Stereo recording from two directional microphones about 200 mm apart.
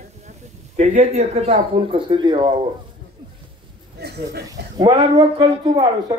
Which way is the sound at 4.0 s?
55° right (ahead or behind).